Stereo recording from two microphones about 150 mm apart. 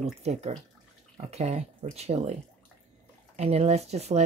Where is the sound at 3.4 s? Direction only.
45° right (ahead or behind).